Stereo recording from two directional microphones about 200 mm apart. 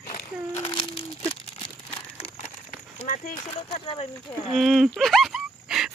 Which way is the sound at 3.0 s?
35° left (ahead or behind).